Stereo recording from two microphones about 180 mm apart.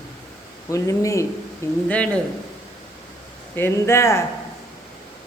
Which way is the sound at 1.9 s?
5° left (ahead or behind).